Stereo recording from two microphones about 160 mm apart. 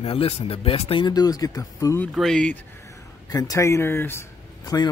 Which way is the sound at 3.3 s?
20° left (ahead or behind).